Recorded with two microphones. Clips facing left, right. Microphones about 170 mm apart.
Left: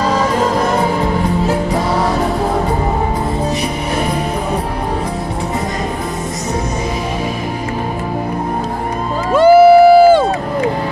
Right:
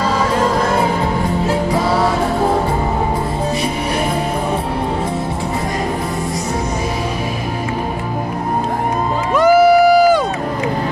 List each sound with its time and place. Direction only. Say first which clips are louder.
9.3 s crowd: left 4 dB; 30° left (ahead or behind)